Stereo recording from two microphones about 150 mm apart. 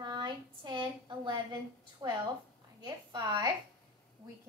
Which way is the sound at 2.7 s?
30° right (ahead or behind).